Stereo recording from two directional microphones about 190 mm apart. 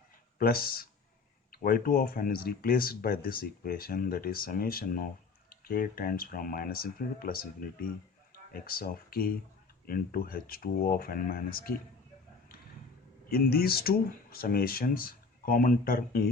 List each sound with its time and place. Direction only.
0.3 s speech: 50° left (ahead or behind)
13.3 s speech: 50° left (ahead or behind)